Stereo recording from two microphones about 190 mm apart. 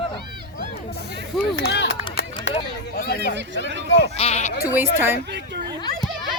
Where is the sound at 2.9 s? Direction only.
50° left (ahead or behind).